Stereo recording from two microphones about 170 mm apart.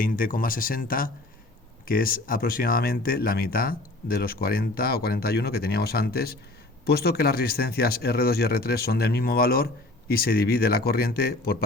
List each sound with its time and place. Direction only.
0.0 s speech: 55° left (ahead or behind)